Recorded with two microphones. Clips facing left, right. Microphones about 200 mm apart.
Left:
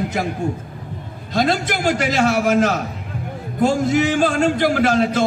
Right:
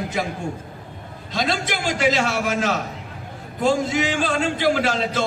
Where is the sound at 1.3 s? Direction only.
55° left (ahead or behind).